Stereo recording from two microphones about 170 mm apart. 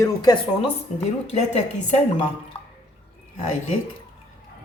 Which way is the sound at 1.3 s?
45° left (ahead or behind).